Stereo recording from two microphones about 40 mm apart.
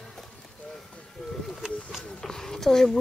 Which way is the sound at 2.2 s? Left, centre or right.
Centre.